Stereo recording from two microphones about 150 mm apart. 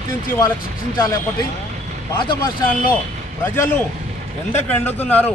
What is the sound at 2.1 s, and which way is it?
Speech, 35° left (ahead or behind).